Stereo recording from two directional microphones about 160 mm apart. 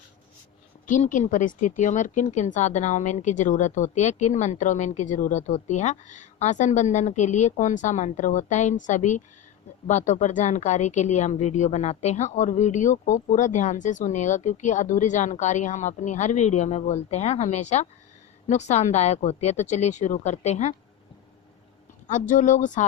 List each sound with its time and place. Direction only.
0.9 s speech: 55° left (ahead or behind)
22.0 s speech: 50° left (ahead or behind)